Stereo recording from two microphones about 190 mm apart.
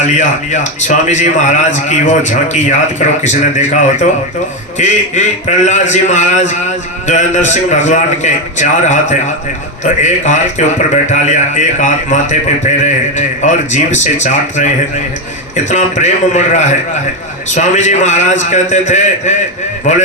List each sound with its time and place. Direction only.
0.0 s a man's voice: 40° left (ahead or behind)